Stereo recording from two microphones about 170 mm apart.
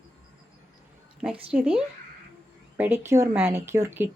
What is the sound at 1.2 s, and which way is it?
A woman's voice, 5° right (ahead or behind).